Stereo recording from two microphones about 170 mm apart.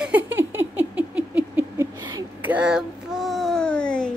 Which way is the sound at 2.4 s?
5° right (ahead or behind).